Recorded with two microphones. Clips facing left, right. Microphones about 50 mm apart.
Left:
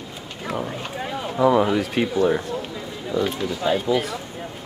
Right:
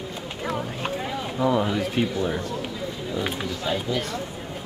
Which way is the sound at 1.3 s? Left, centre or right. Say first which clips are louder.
Left 5 dB; centre.